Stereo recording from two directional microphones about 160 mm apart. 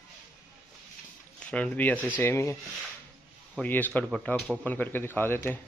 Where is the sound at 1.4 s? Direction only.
5° left (ahead or behind).